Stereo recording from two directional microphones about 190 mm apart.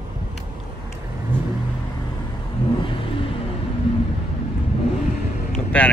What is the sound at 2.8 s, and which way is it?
Vehicle, 25° left (ahead or behind).